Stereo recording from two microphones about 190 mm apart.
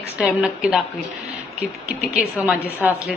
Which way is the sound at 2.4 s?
10° right (ahead or behind).